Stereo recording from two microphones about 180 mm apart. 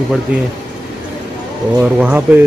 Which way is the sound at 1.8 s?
10° right (ahead or behind).